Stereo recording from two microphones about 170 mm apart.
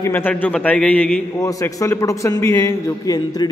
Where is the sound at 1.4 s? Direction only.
20° left (ahead or behind).